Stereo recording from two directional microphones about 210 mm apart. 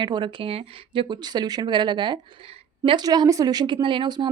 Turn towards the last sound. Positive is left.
turn(degrees=-25)  # may be behind; listen again after turning